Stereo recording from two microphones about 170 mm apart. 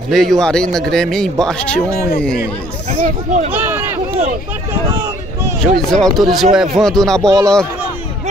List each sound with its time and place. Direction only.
0.1 s a man's voice: centre (ahead or behind)
2.9 s speech: 45° right (ahead or behind)
3.5 s a man's voice: 10° right (ahead or behind)
5.6 s a man's voice: 5° left (ahead or behind)
7.2 s a man's voice: 15° right (ahead or behind)